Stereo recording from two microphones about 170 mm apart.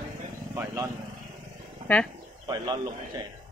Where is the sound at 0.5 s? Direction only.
15° right (ahead or behind).